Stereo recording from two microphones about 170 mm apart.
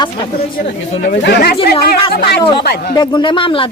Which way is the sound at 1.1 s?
80° left.